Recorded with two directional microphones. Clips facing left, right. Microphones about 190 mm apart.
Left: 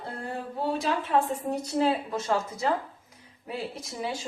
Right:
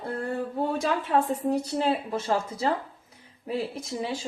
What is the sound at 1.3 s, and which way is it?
A woman's voice, 35° right (ahead or behind).